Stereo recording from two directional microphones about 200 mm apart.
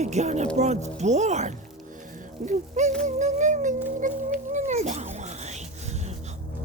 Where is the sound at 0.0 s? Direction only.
35° right (ahead or behind).